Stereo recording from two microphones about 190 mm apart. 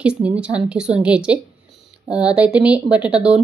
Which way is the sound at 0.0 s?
5° right (ahead or behind).